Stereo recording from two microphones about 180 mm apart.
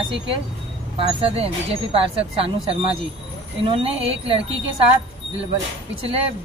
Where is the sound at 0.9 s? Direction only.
30° right (ahead or behind).